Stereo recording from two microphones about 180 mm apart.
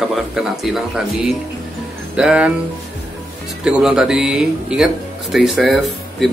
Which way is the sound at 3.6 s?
5° right (ahead or behind).